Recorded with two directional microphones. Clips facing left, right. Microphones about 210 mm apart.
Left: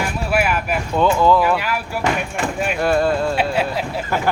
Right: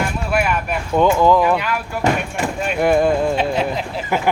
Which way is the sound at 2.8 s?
15° right (ahead or behind).